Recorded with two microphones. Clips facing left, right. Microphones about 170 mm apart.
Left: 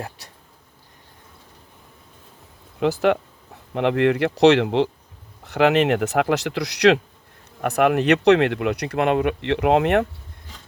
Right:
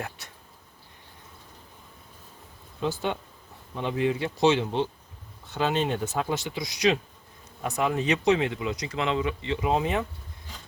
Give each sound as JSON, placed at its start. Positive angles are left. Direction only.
{"t": 0.2, "sound": "insect", "side_deg": 35}
{"t": 2.8, "sound": "speech", "side_deg": 80}